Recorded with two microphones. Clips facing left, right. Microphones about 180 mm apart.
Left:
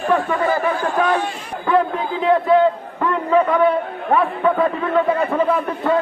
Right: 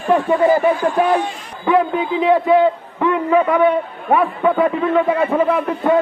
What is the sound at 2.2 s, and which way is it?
A man's voice, 5° right (ahead or behind).